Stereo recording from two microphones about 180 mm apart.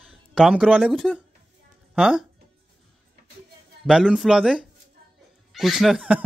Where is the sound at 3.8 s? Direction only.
5° right (ahead or behind).